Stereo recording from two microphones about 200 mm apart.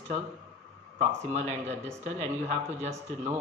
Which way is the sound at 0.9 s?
35° right (ahead or behind).